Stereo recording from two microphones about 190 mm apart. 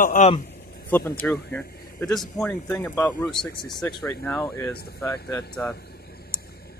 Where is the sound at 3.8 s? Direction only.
25° left (ahead or behind).